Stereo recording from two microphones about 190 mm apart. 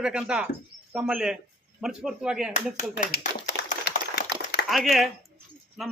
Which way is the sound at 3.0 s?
40° left (ahead or behind).